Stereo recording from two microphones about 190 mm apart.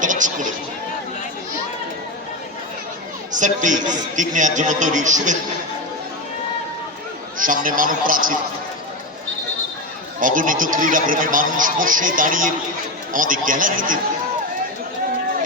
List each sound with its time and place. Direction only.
0.0 s a sound: 40° right (ahead or behind)
3.3 s a man's voice: 40° right (ahead or behind)
7.3 s speech: 45° right (ahead or behind)
10.2 s speech: 45° right (ahead or behind)